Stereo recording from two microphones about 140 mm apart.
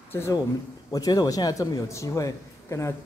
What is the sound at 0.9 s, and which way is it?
A man's voice, 25° left (ahead or behind).